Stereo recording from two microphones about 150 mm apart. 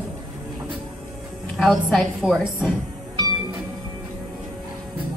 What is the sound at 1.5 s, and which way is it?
A woman's voice, centre (ahead or behind).